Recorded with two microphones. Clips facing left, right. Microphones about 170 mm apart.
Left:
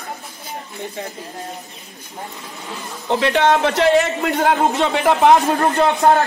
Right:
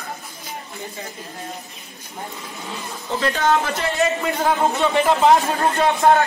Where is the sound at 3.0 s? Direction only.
75° left (ahead or behind).